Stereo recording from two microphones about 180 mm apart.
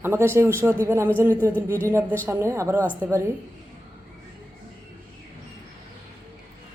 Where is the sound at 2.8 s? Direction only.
10° left (ahead or behind).